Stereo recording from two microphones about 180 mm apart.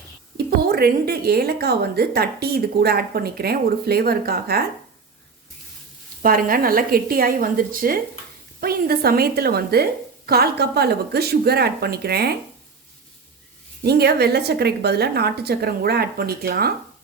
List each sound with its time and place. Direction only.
0.3 s a woman's voice: 60° right (ahead or behind)
6.2 s a woman's voice: 50° right (ahead or behind)
13.8 s a woman's voice: 60° right (ahead or behind)